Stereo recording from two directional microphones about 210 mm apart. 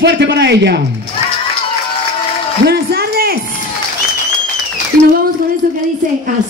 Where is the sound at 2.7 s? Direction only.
50° right (ahead or behind).